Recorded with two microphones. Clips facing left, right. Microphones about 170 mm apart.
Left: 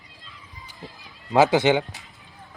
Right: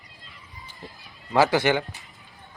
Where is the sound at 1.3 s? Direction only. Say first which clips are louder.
Left 3 dB; 20° left (ahead or behind).